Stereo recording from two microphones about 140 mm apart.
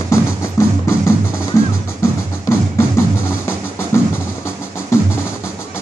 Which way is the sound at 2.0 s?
20° left (ahead or behind).